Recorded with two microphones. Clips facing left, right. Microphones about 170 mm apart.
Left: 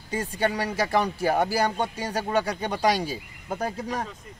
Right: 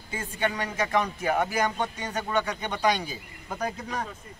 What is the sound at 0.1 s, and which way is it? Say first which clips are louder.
Speech: left 4 dB; 35° left (ahead or behind).